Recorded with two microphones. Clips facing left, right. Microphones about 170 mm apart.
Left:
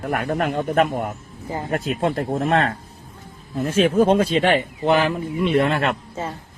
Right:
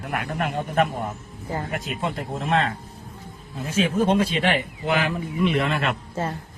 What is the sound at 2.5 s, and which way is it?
Speech, 70° left (ahead or behind).